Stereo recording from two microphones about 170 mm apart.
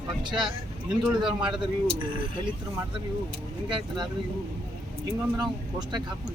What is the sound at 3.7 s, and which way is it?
Speech, 25° right (ahead or behind).